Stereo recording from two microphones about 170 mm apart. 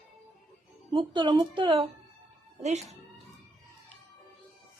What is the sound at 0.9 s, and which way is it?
Speech, 30° right (ahead or behind).